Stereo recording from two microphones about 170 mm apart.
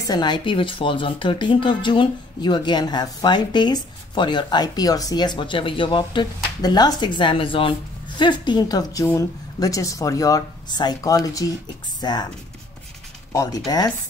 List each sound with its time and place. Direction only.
0.0 s speech: 25° left (ahead or behind)
13.3 s speech: 20° left (ahead or behind)